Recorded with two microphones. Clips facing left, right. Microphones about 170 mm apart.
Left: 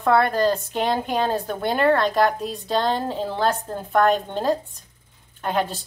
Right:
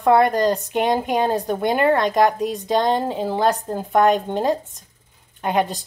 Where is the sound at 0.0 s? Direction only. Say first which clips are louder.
Right 3 dB; 15° right (ahead or behind).